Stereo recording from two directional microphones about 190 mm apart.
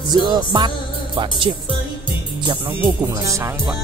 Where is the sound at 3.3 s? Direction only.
15° right (ahead or behind).